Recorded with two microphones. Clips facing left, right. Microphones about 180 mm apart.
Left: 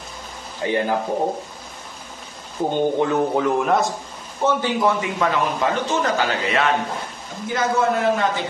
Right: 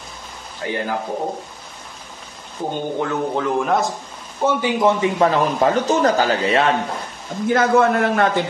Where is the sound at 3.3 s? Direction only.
Centre (ahead or behind).